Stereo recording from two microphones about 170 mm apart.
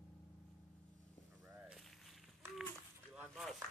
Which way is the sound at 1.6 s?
Centre (ahead or behind).